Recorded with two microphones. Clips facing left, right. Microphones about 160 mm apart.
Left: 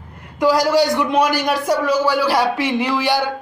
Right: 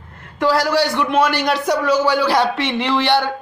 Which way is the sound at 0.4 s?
15° left (ahead or behind).